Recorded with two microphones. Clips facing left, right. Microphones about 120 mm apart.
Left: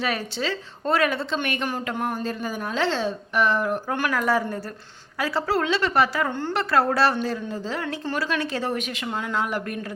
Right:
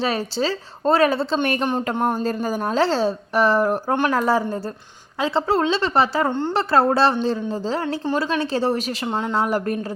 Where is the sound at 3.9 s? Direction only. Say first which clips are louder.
Right 3 dB; 25° right (ahead or behind).